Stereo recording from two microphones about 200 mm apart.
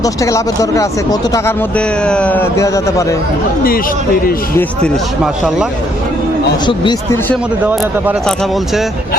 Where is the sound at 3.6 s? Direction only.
45° left (ahead or behind).